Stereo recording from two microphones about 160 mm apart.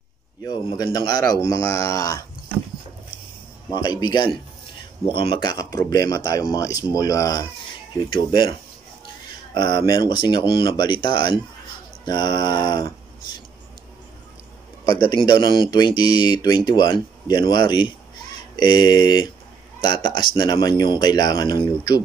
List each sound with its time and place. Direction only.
0.4 s speech: 25° left (ahead or behind)
3.7 s speech: 25° left (ahead or behind)
14.9 s speech: 25° left (ahead or behind)